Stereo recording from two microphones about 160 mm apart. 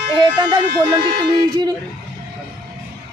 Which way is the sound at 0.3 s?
30° right (ahead or behind).